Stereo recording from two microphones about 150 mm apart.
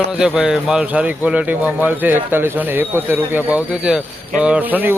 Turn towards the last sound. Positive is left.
turn(degrees=-10)  # may be behind; listen again after turning